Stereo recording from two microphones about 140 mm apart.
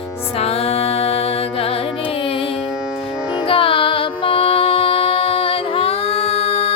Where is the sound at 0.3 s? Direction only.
45° left (ahead or behind).